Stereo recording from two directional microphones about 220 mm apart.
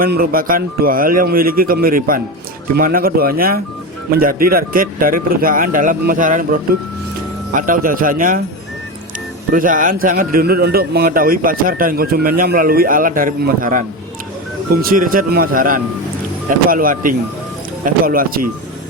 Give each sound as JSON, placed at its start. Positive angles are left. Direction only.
{"t": 0.0, "sound": "speech", "side_deg": -40}
{"t": 9.5, "sound": "speech", "side_deg": -40}